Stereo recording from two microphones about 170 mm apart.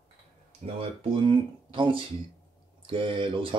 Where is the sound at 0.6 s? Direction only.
35° right (ahead or behind).